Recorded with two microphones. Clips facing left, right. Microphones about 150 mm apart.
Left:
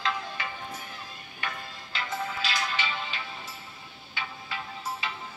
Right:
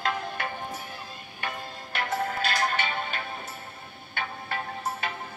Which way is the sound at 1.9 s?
60° right (ahead or behind).